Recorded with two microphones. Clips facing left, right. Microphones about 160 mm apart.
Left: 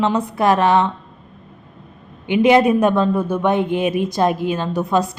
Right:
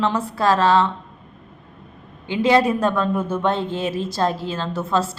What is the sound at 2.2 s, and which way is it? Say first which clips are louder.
Mantra: left 4 dB; 20° left (ahead or behind).